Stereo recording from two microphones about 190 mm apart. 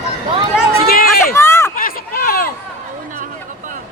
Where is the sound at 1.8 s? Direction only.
50° left (ahead or behind).